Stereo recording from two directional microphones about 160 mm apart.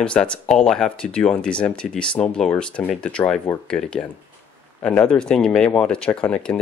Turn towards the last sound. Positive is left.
turn(degrees=5)  # may be behind; listen again after turning